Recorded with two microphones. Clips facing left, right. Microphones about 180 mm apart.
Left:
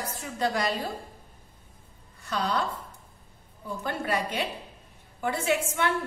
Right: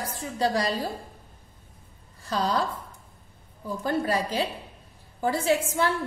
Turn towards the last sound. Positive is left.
turn(degrees=-35)  # may be behind; listen again after turning